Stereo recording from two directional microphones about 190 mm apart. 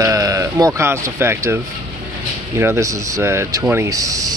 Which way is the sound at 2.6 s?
15° right (ahead or behind).